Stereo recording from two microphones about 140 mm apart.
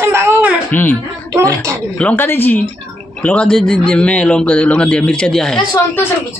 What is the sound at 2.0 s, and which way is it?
A man's voice, 10° left (ahead or behind).